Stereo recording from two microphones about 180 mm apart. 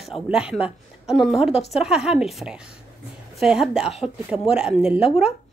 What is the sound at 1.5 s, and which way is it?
Speech, 35° left (ahead or behind).